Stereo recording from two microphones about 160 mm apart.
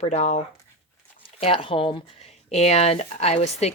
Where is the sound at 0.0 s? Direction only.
45° left (ahead or behind).